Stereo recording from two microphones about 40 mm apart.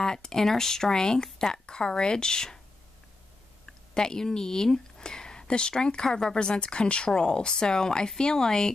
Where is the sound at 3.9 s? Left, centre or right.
Centre.